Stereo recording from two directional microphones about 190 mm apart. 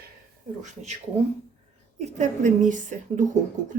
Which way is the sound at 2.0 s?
35° right (ahead or behind).